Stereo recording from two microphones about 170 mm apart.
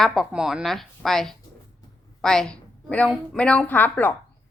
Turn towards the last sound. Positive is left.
turn(degrees=10)  # may be behind; listen again after turning